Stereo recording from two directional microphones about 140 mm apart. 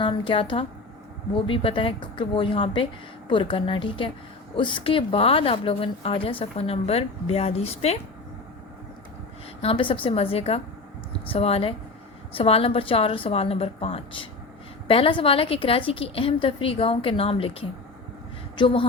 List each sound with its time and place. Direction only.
0.0 s a woman's voice: 40° left (ahead or behind)
9.6 s a woman's voice: 40° left (ahead or behind)